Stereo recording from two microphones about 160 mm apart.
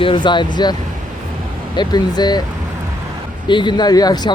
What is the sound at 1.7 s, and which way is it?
Speech, 25° left (ahead or behind).